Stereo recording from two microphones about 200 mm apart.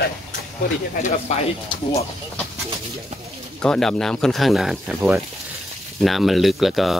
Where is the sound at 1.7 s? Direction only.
25° left (ahead or behind).